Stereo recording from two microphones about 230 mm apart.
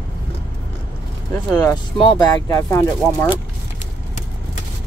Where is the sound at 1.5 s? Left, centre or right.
Centre.